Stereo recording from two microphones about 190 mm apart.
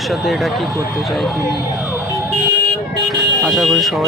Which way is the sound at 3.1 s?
Centre (ahead or behind).